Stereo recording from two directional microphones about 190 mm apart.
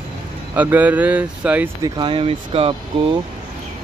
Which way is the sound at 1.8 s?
25° right (ahead or behind).